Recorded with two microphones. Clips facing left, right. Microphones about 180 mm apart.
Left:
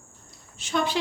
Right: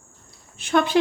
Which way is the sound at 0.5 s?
60° right (ahead or behind).